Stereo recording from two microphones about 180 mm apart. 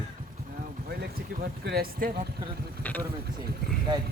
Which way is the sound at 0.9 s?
55° right (ahead or behind).